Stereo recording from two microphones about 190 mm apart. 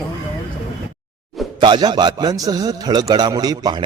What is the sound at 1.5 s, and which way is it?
A man's voice, 25° right (ahead or behind).